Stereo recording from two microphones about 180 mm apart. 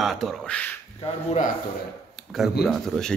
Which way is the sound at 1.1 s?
30° left (ahead or behind).